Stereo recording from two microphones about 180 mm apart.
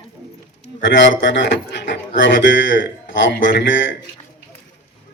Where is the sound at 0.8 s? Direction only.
85° left.